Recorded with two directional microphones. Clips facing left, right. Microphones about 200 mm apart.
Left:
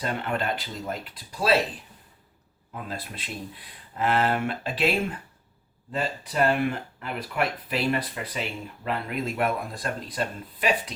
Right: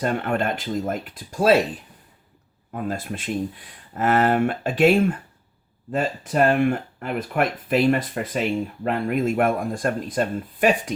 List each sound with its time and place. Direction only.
0.0 s speech: 50° right (ahead or behind)
2.7 s speech: 50° right (ahead or behind)